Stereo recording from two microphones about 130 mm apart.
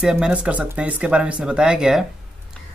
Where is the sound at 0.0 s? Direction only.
5° right (ahead or behind).